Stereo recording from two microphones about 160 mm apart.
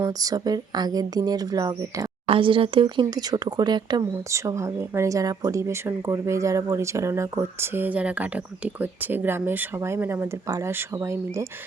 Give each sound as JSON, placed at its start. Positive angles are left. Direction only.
{"t": 0.0, "sound": "a woman's voice", "side_deg": -25}
{"t": 2.2, "sound": "a woman's voice", "side_deg": -35}